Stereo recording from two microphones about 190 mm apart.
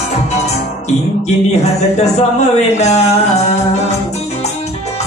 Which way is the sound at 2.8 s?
35° left (ahead or behind).